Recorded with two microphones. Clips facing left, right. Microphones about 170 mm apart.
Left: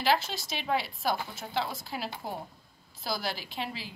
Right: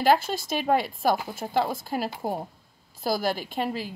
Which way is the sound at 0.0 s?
50° right (ahead or behind).